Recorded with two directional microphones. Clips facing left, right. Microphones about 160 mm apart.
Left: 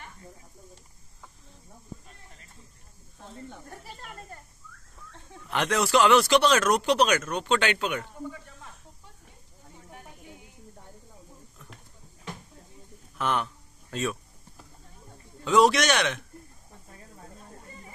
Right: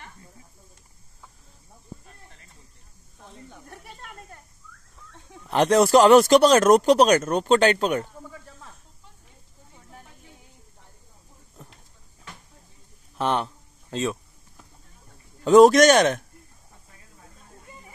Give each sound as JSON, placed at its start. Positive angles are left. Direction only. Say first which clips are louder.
{"t": 3.6, "sound": "speech", "louder": "even", "side_deg": 0}
{"t": 5.5, "sound": "speech", "louder": "right 7 dB", "side_deg": -35}
{"t": 13.2, "sound": "a sound", "louder": "right 4 dB", "side_deg": -30}
{"t": 15.4, "sound": "speech", "louder": "right 8 dB", "side_deg": -45}